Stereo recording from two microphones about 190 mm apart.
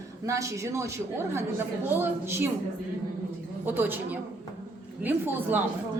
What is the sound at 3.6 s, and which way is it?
Speech, 10° right (ahead or behind).